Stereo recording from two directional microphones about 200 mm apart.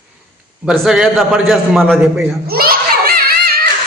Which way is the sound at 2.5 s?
50° right (ahead or behind).